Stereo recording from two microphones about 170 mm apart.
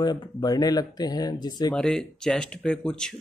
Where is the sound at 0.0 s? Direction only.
25° left (ahead or behind).